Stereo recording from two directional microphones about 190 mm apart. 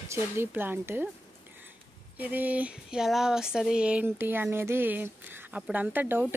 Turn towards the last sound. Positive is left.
turn(degrees=-10)  # may be behind; listen again after turning